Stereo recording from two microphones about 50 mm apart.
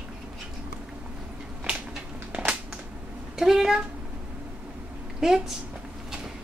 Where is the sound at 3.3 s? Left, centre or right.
Centre.